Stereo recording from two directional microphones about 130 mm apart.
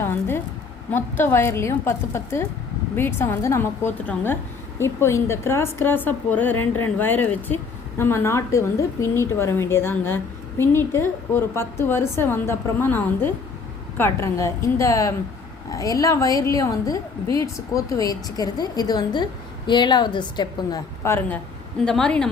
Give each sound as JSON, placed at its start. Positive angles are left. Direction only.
{"t": 0.0, "sound": "a sound", "side_deg": 15}
{"t": 0.9, "sound": "a woman's voice", "side_deg": 15}
{"t": 21.0, "sound": "a woman's voice", "side_deg": 15}
{"t": 21.8, "sound": "a woman's voice", "side_deg": 5}